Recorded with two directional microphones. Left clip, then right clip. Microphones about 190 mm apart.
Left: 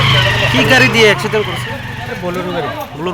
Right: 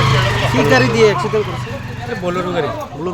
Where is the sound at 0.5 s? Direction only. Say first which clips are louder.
Left 2 dB; centre (ahead or behind).